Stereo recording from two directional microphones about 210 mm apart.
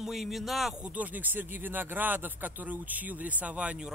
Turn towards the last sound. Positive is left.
turn(degrees=-5)  # may be behind; listen again after turning